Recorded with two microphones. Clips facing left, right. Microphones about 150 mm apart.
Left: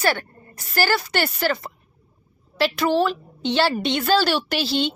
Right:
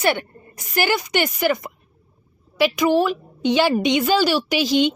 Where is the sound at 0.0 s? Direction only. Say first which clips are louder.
Right 2 dB; 20° right (ahead or behind).